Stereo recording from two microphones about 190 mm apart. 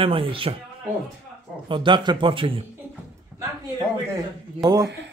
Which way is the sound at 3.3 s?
10° right (ahead or behind).